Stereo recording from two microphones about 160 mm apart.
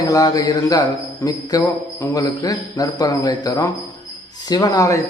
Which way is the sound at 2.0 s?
20° left (ahead or behind).